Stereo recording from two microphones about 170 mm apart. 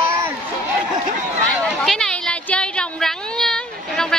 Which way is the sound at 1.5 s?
5° left (ahead or behind).